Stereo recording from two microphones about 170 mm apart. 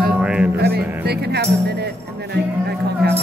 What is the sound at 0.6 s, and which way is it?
Music, 70° right (ahead or behind).